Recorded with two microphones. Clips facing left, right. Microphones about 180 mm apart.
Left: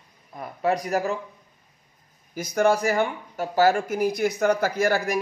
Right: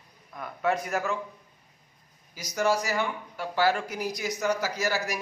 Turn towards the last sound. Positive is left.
turn(degrees=55)  # may be behind; listen again after turning